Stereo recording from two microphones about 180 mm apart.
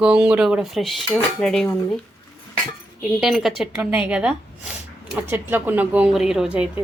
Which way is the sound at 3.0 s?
Centre (ahead or behind).